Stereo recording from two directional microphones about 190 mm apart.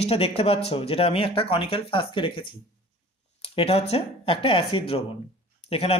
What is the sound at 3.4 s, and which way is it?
Speech, 30° left (ahead or behind).